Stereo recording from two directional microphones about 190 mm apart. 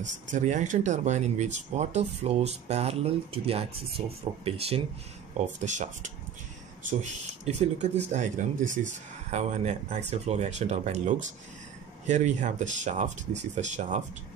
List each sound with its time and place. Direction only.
0.0 s speech: 40° right (ahead or behind)